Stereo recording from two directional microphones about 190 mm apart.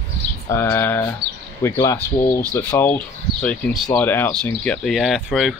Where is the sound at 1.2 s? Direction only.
60° right (ahead or behind).